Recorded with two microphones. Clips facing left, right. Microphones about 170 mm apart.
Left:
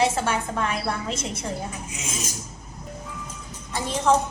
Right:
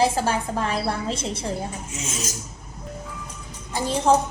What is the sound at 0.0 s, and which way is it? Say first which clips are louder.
A woman's voice: right 2 dB; 30° right (ahead or behind).